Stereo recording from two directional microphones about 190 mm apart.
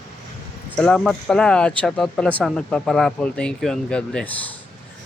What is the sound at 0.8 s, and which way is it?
Speech, 5° left (ahead or behind).